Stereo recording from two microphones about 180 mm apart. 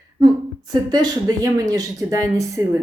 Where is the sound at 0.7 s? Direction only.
20° right (ahead or behind).